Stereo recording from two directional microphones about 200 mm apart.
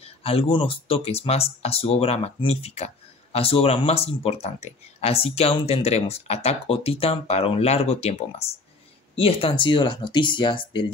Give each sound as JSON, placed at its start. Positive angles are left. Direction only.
{"t": 0.0, "sound": "speech", "side_deg": 30}